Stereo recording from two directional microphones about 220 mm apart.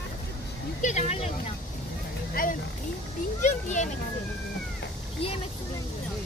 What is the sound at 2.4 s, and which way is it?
Speech, 40° left (ahead or behind).